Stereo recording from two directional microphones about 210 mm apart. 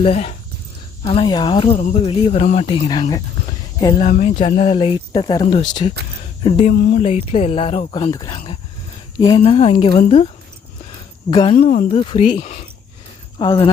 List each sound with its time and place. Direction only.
0.0 s speech: 30° left (ahead or behind)
4.0 s speech: 35° left (ahead or behind)
11.3 s speech: 20° left (ahead or behind)
11.5 s speech: 40° left (ahead or behind)
11.9 s speech: 30° left (ahead or behind)